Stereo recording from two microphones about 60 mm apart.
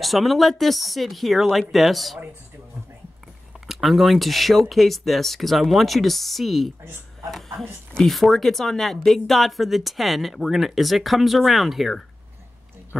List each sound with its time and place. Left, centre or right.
0.0 s speech: centre
3.6 s speech: centre
6.8 s a sound: right
7.2 s speech: centre